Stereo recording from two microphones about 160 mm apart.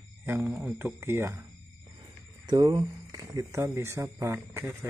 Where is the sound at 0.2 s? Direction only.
15° right (ahead or behind).